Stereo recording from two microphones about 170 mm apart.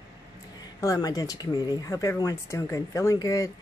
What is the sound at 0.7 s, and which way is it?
Speech, 20° left (ahead or behind).